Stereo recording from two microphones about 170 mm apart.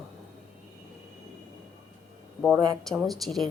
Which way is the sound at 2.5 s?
20° right (ahead or behind).